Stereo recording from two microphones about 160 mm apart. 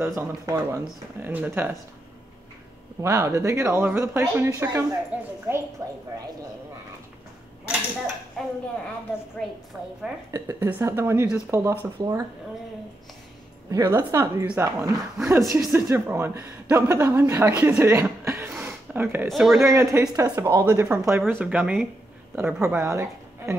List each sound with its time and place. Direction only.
0.0 s speech: 15° right (ahead or behind)
3.0 s speech: 20° right (ahead or behind)
5.8 s speech: 20° right (ahead or behind)
8.4 s speech: 5° left (ahead or behind)
10.3 s speech: 15° right (ahead or behind)
13.7 s speech: 20° right (ahead or behind)
18.6 s a sound: 10° right (ahead or behind)
19.2 s speech: centre (ahead or behind)
19.6 s a woman's voice: 20° right (ahead or behind)